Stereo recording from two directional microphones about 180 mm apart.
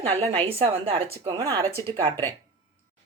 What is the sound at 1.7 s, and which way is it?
Speech, 15° left (ahead or behind).